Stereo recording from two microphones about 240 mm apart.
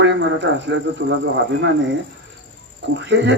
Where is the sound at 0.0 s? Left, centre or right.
Right.